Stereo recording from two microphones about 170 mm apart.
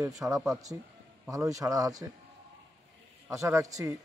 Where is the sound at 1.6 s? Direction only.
20° right (ahead or behind).